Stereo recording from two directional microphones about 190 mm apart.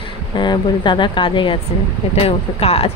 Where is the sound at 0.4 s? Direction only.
25° left (ahead or behind).